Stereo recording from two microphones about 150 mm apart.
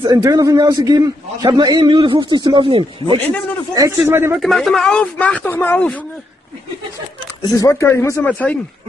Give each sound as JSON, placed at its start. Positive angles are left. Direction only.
{"t": 0.2, "sound": "a man's voice", "side_deg": -25}
{"t": 3.7, "sound": "a man's voice", "side_deg": -20}
{"t": 4.4, "sound": "speech", "side_deg": 0}
{"t": 7.5, "sound": "speech", "side_deg": 20}
{"t": 8.2, "sound": "speech", "side_deg": 10}